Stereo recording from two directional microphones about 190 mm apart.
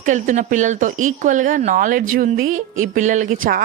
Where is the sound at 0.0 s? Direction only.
40° right (ahead or behind).